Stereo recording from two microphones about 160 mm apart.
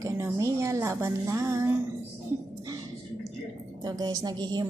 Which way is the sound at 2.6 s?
20° right (ahead or behind).